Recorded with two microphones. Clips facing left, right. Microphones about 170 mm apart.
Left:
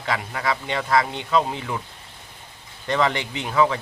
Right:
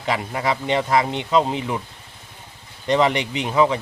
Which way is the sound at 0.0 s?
20° right (ahead or behind).